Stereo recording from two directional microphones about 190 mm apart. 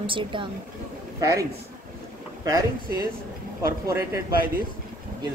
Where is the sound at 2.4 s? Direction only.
20° right (ahead or behind).